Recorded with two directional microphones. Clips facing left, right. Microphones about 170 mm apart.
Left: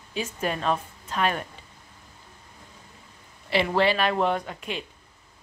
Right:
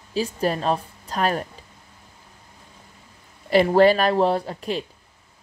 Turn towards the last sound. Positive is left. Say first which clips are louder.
# right 6 dB
turn(degrees=-35)  # may be behind; listen again after turning